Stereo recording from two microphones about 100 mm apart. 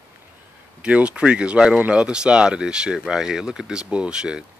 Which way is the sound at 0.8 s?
10° right (ahead or behind).